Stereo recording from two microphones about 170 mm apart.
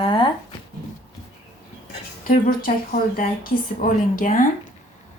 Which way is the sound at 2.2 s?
55° left (ahead or behind).